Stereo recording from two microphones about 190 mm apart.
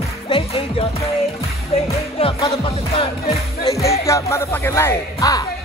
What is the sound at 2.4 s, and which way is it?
Music, 25° left (ahead or behind).